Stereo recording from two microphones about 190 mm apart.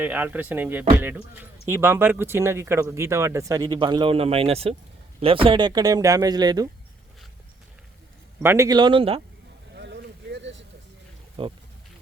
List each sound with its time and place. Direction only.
0.0 s speech: 10° right (ahead or behind)
8.4 s speech: 15° right (ahead or behind)
9.7 s vehicle: 65° right (ahead or behind)
11.4 s speech: 30° right (ahead or behind)